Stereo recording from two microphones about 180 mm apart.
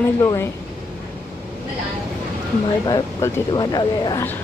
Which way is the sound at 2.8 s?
25° left (ahead or behind).